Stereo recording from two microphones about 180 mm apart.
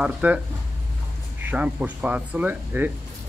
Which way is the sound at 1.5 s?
5° right (ahead or behind).